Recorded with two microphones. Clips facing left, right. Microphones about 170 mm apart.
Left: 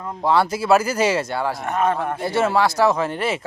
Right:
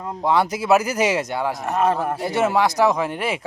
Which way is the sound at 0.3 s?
20° right (ahead or behind).